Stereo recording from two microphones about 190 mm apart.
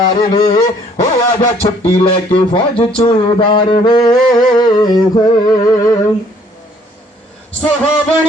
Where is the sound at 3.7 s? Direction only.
20° left (ahead or behind).